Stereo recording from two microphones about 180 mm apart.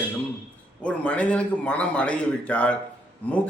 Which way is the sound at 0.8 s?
5° left (ahead or behind).